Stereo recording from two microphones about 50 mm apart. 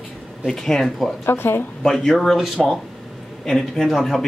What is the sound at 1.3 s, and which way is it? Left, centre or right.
Speech, left.